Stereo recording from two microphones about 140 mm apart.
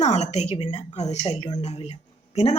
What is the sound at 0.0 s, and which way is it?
A woman's voice, 55° left (ahead or behind).